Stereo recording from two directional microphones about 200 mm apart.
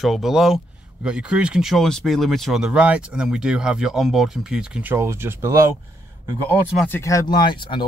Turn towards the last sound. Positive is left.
turn(degrees=25)  # may be behind; listen again after turning